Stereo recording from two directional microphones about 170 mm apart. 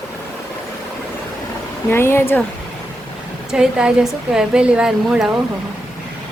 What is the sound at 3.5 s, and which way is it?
A woman's voice, 5° right (ahead or behind).